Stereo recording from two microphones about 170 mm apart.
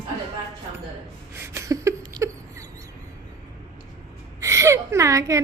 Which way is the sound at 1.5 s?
20° right (ahead or behind).